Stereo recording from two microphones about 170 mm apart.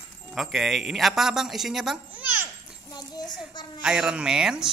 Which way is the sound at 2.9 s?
25° left (ahead or behind).